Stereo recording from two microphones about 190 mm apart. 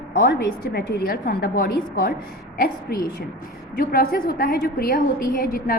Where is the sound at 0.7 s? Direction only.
55° left (ahead or behind).